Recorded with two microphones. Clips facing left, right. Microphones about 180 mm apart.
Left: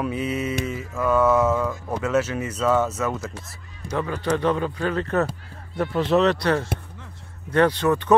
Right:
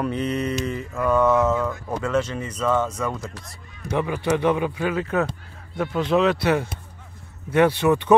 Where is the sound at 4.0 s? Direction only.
10° right (ahead or behind).